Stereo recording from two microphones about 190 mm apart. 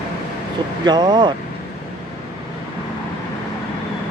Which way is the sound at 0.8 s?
20° right (ahead or behind).